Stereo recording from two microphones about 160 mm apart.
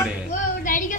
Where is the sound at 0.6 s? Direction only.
55° left (ahead or behind).